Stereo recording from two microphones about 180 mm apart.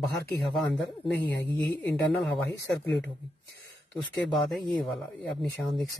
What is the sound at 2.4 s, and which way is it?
Speech, 75° left (ahead or behind).